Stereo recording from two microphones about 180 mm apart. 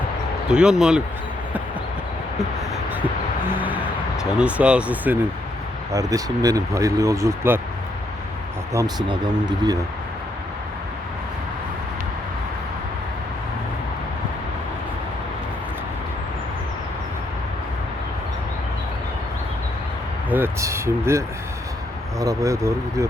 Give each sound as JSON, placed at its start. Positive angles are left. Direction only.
{"t": 0.5, "sound": "speech", "side_deg": -5}
{"t": 3.5, "sound": "speech", "side_deg": -10}
{"t": 5.9, "sound": "speech", "side_deg": -20}
{"t": 8.7, "sound": "speech", "side_deg": -20}
{"t": 20.3, "sound": "speech", "side_deg": -15}